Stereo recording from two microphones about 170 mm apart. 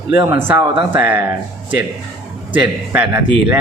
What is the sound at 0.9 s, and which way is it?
Speech, 10° right (ahead or behind).